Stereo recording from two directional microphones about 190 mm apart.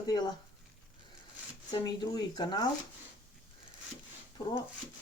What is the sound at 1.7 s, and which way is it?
Speech, 20° left (ahead or behind).